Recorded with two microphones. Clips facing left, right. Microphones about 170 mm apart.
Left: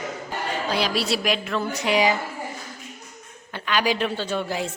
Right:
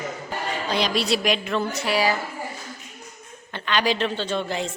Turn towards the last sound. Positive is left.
turn(degrees=10)  # may be behind; listen again after turning